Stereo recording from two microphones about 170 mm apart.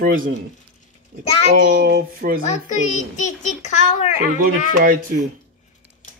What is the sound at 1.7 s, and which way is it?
Female singing, 60° right (ahead or behind).